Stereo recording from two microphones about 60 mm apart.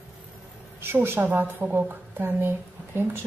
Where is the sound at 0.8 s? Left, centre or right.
Right.